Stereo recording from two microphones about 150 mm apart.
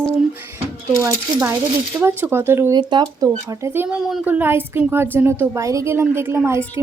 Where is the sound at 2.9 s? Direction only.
30° right (ahead or behind).